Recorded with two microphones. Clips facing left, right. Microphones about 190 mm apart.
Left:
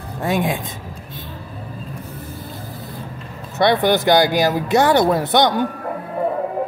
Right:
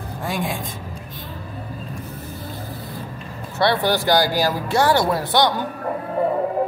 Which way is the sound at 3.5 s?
20° left (ahead or behind).